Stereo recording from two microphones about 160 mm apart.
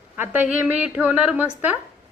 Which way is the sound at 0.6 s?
10° right (ahead or behind).